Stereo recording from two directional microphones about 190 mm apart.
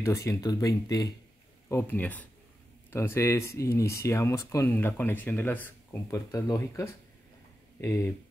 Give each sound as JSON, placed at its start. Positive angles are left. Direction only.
{"t": 0.0, "sound": "speech", "side_deg": 15}